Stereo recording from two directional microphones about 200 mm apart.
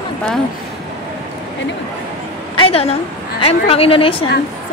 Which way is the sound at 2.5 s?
30° left (ahead or behind).